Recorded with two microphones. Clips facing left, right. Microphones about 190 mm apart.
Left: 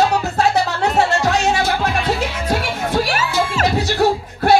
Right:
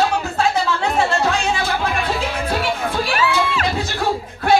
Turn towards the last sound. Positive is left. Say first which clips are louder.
# left 1 dB
turn(degrees=45)  # may be behind; listen again after turning